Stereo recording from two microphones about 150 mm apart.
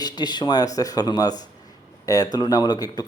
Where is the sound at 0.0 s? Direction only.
30° left (ahead or behind).